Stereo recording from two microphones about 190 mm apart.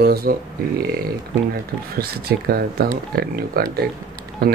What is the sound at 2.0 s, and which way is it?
Speech, 55° right (ahead or behind).